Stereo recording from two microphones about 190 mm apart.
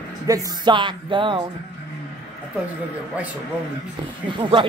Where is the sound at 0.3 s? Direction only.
25° right (ahead or behind).